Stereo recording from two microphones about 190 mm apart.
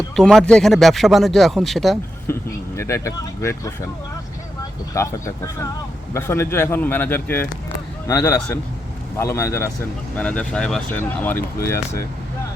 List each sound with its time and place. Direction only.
0.2 s speech: 5° left (ahead or behind)
2.2 s speech: 15° left (ahead or behind)
4.9 s speech: 15° left (ahead or behind)